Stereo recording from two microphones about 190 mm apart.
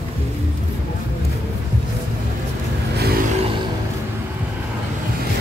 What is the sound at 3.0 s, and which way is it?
Music, 55° right (ahead or behind).